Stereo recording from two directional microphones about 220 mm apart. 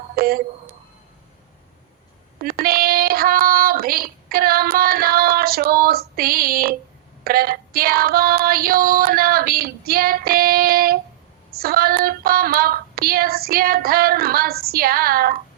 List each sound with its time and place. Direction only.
0.2 s a sound: 45° right (ahead or behind)
2.4 s child singing: 45° right (ahead or behind)
7.3 s female singing: 45° right (ahead or behind)
11.6 s child singing: 40° right (ahead or behind)